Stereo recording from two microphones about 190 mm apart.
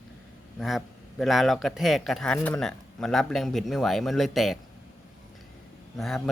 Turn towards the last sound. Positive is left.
turn(degrees=0)  # may be behind; listen again after turning